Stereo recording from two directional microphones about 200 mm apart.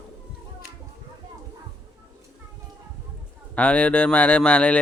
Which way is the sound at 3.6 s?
5° left (ahead or behind).